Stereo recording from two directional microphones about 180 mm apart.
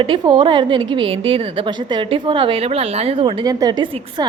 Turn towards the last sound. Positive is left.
turn(degrees=-25)  # may be behind; listen again after turning